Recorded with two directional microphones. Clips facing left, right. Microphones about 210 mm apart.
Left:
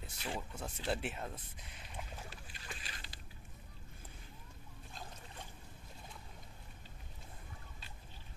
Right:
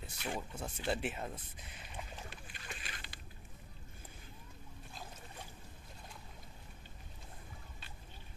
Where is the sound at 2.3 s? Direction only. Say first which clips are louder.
Right 1 dB; 35° left (ahead or behind).